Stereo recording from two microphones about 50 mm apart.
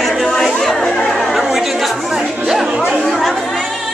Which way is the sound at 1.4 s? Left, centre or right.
Centre.